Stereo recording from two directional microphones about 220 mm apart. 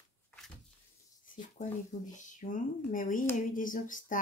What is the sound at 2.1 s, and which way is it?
Speech, 35° left (ahead or behind).